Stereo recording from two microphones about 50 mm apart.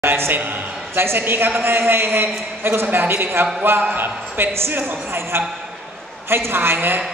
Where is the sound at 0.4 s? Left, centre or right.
Right.